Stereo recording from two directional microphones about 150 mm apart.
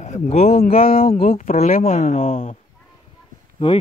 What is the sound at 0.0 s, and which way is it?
Speech, 50° left (ahead or behind).